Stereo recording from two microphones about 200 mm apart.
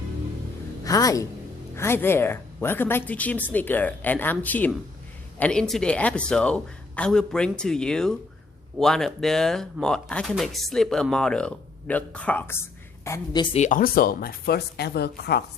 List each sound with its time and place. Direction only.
0.9 s a woman's voice: 15° left (ahead or behind)
13.6 s speech: 40° left (ahead or behind)